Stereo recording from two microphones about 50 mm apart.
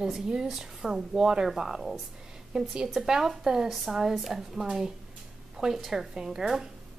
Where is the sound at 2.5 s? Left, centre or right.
Centre.